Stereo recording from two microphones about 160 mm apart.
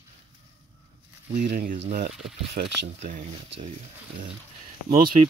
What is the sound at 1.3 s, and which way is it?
Speech, 60° right (ahead or behind).